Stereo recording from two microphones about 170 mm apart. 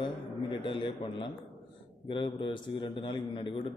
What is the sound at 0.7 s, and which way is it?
A man's voice, 30° left (ahead or behind).